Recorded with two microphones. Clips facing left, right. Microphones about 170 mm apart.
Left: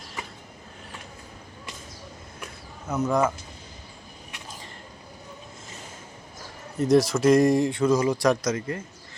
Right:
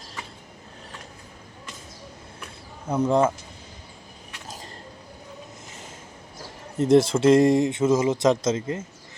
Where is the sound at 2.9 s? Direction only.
30° right (ahead or behind).